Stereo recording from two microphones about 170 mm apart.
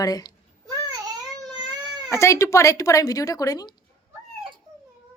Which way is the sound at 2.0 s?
15° left (ahead or behind).